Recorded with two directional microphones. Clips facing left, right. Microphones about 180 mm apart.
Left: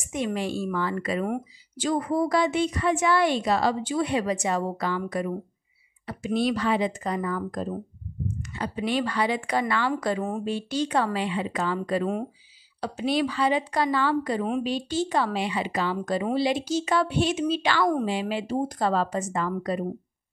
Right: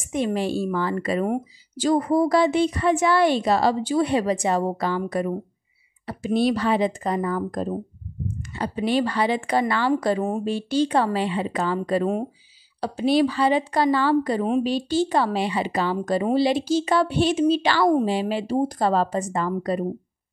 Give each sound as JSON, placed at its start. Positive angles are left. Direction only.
{"t": 0.1, "sound": "a woman's voice", "side_deg": -30}